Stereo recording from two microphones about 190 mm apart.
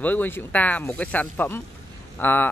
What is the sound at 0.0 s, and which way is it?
Speech, 10° left (ahead or behind).